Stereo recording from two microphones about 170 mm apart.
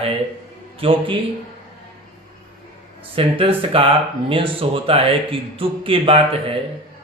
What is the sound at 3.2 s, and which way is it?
Speech, 30° right (ahead or behind).